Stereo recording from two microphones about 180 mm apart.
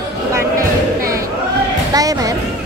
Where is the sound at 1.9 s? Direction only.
20° right (ahead or behind).